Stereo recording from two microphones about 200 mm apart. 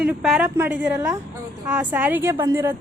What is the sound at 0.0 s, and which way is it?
A woman's voice, 5° right (ahead or behind).